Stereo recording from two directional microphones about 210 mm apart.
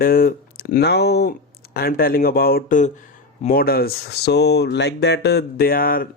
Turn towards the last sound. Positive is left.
turn(degrees=45)  # may be behind; listen again after turning